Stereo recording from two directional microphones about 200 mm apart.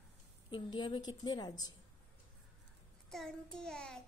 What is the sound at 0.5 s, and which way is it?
A woman's voice, 20° left (ahead or behind).